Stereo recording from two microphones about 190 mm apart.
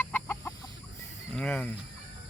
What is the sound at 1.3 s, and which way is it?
Speech, 5° left (ahead or behind).